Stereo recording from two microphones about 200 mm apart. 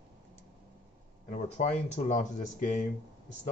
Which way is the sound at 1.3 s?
35° left (ahead or behind).